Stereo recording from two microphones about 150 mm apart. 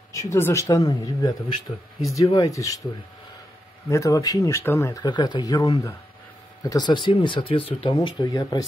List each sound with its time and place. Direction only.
0.1 s speech: 20° left (ahead or behind)
3.9 s speech: 20° left (ahead or behind)